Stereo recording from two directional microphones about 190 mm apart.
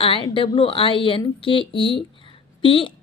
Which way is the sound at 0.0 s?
30° left (ahead or behind).